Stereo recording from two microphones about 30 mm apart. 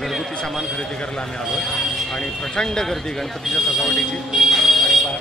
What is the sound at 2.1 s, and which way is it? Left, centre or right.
Speech, left.